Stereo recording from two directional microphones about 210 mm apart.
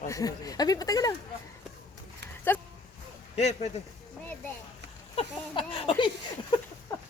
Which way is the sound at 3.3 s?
30° left (ahead or behind).